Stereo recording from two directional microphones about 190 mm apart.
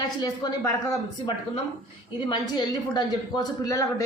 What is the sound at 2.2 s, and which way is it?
A man's voice, 20° left (ahead or behind).